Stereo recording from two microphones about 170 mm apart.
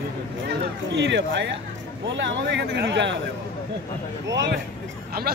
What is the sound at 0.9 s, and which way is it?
A man's voice, 90° right.